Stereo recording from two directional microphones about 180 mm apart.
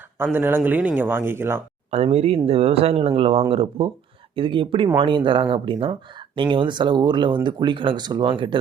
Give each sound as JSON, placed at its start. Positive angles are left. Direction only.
{"t": 0.3, "sound": "speech", "side_deg": -10}
{"t": 1.9, "sound": "speech", "side_deg": -35}